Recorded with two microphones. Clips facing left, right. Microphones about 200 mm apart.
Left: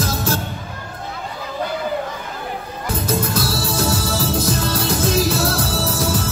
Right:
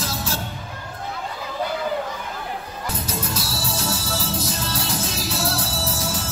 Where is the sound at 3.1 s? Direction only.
55° left (ahead or behind).